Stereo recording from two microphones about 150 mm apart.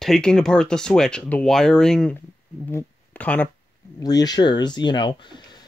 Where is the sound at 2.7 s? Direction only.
10° left (ahead or behind).